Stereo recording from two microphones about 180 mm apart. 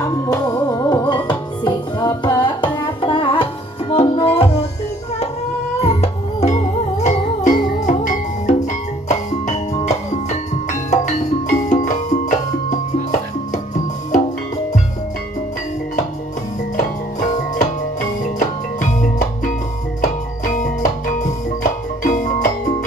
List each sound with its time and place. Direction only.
0.3 s music: 20° left (ahead or behind)
5.8 s music: 35° left (ahead or behind)
16.7 s music: 45° left (ahead or behind)